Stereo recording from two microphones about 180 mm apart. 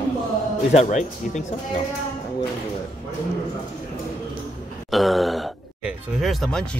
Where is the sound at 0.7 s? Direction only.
40° left (ahead or behind).